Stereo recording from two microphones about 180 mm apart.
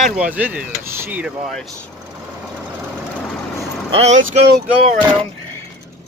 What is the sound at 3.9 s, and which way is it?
Speech, 35° right (ahead or behind).